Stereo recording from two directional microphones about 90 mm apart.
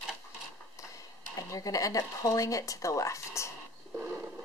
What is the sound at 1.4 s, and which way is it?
Speech, 40° left (ahead or behind).